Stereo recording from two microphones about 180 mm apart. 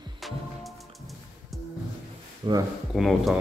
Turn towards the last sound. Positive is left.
turn(degrees=0)  # may be behind; listen again after turning